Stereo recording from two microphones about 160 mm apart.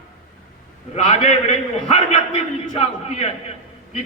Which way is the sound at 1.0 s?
40° left (ahead or behind).